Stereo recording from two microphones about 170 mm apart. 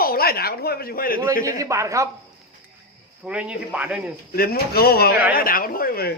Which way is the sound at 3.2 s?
5° right (ahead or behind).